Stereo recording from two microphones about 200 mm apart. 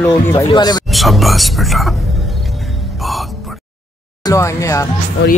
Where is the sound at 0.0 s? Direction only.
15° left (ahead or behind).